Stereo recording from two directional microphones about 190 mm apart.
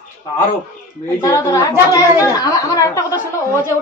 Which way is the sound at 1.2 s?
15° left (ahead or behind).